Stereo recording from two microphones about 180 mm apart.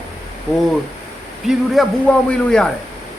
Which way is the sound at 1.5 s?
Centre (ahead or behind).